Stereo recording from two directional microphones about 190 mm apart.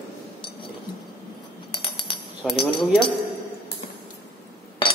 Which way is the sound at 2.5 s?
25° left (ahead or behind).